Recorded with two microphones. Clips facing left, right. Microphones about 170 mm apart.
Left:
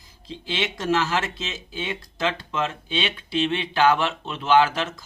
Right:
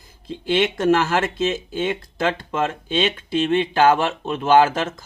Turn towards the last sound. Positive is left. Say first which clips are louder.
# right 3 dB
turn(degrees=-50)  # may be behind; listen again after turning